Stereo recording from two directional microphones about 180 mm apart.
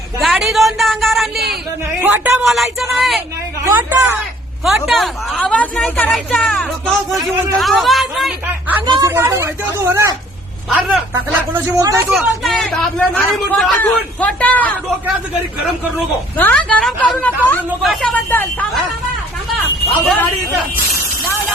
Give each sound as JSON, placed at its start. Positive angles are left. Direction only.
{"t": 0.2, "sound": "a woman's voice", "side_deg": 0}
{"t": 3.6, "sound": "speech", "side_deg": -10}
{"t": 4.6, "sound": "speech", "side_deg": 0}
{"t": 8.9, "sound": "speech", "side_deg": -20}
{"t": 12.1, "sound": "speech", "side_deg": 0}
{"t": 16.4, "sound": "a woman's voice", "side_deg": 5}